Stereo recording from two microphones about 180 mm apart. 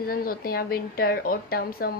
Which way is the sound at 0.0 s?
55° left (ahead or behind).